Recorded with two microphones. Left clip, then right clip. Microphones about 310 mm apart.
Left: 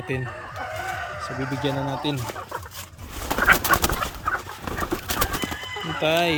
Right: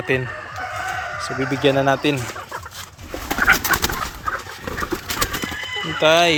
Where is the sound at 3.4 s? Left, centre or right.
Left.